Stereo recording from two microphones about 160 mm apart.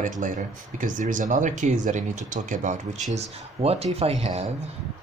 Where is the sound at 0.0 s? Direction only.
50° right (ahead or behind).